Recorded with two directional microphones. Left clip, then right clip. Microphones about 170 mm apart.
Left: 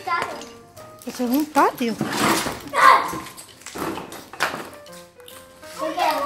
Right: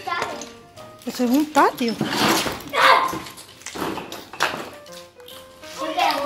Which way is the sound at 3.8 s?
Centre (ahead or behind).